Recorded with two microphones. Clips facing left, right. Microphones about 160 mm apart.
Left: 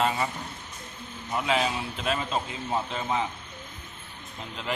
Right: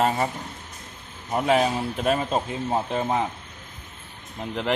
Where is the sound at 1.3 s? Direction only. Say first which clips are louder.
Right 6 dB; 45° right (ahead or behind).